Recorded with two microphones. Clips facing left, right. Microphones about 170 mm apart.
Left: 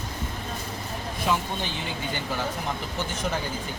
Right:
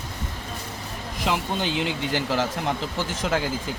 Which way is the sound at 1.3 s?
85° right.